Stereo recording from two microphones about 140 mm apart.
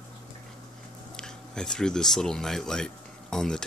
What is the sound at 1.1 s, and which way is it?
Speech, 5° left (ahead or behind).